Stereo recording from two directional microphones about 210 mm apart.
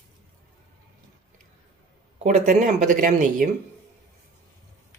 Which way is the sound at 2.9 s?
40° right (ahead or behind).